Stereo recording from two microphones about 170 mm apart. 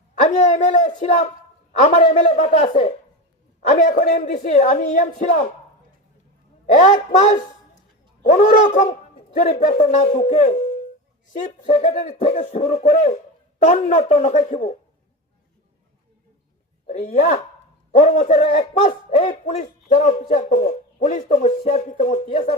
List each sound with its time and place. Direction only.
0.2 s a man's voice: 45° left (ahead or behind)
6.7 s a man's voice: 50° left (ahead or behind)
11.6 s a man's voice: 45° left (ahead or behind)
16.8 s a man's voice: 45° left (ahead or behind)